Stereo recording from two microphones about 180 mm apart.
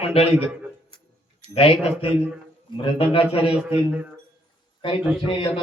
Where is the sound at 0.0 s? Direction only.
35° left (ahead or behind).